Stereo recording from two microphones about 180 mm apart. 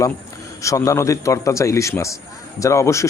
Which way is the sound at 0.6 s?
20° left (ahead or behind).